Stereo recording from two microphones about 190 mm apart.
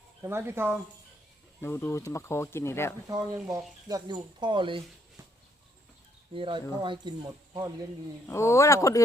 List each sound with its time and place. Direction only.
0.2 s speech: 15° right (ahead or behind)
1.6 s speech: 15° left (ahead or behind)
3.3 s speech: 10° right (ahead or behind); by 4.8 s 25° right (ahead or behind)
6.3 s speech: 25° right (ahead or behind)
8.3 s speech: 15° left (ahead or behind)